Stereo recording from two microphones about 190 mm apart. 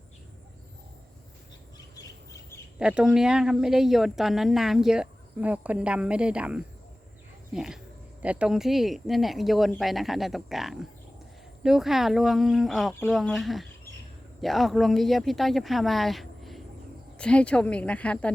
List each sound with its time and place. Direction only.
2.0 s squawk: 15° left (ahead or behind)
2.7 s a woman's voice: 5° right (ahead or behind)